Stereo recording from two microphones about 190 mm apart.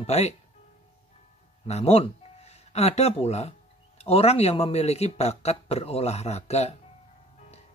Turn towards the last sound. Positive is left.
turn(degrees=35)  # may be behind; listen again after turning